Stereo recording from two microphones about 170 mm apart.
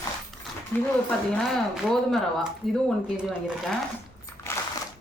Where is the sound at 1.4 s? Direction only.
Centre (ahead or behind).